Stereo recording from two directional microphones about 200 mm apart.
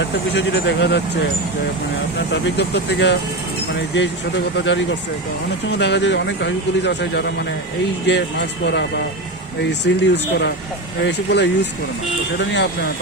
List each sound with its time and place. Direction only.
0.0 s speech: 60° left (ahead or behind)
2.1 s speech: 60° left (ahead or behind)